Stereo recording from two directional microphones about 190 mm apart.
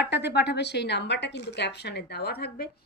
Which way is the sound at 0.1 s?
60° left (ahead or behind).